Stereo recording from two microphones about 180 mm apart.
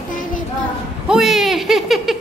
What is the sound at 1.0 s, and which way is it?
A woman's voice, 5° right (ahead or behind).